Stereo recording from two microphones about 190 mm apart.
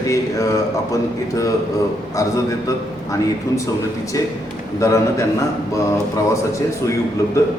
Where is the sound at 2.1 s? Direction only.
15° left (ahead or behind).